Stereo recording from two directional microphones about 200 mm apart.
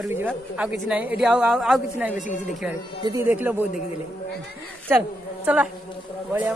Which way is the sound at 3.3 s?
10° right (ahead or behind).